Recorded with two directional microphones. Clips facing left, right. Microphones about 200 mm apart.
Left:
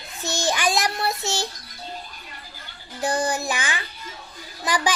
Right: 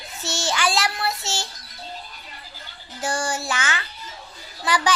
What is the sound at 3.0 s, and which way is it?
Speech, 15° left (ahead or behind).